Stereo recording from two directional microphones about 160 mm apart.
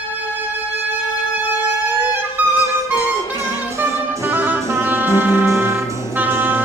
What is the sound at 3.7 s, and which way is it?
Music, 15° right (ahead or behind).